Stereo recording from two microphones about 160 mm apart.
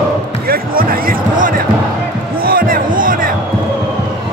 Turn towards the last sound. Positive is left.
turn(degrees=-60)  # may be behind; listen again after turning